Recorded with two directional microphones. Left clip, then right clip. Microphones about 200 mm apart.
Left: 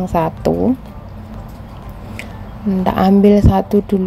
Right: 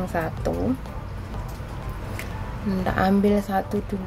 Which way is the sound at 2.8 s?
25° left (ahead or behind).